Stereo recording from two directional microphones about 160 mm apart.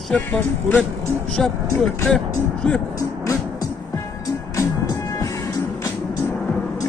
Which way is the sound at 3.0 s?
20° left (ahead or behind).